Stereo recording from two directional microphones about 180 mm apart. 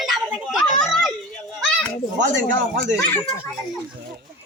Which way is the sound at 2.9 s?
15° left (ahead or behind).